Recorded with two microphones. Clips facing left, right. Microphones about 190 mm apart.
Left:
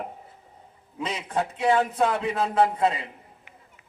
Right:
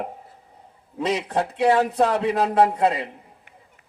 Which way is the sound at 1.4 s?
40° right (ahead or behind).